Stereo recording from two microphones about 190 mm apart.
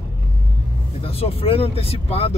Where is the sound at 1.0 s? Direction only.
30° left (ahead or behind).